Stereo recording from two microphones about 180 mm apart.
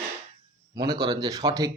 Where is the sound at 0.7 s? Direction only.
20° right (ahead or behind).